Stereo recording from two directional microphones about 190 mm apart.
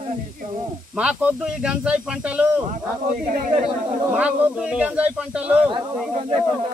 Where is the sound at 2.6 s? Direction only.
45° right (ahead or behind).